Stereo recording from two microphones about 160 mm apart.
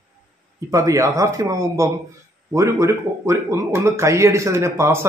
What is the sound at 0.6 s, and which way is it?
A man's voice, 20° right (ahead or behind).